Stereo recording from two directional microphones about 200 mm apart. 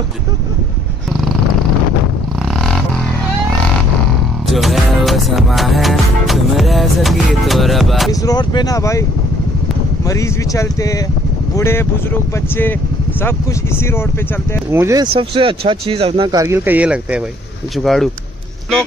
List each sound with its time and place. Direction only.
2.4 s a sound: centre (ahead or behind)
4.5 s music: centre (ahead or behind)
8.1 s speech: 20° left (ahead or behind)
10.0 s speech: 15° left (ahead or behind)
13.2 s speech: 10° left (ahead or behind)
14.7 s speech: 15° right (ahead or behind)
15.1 s speech: 25° right (ahead or behind); by 18.1 s centre (ahead or behind)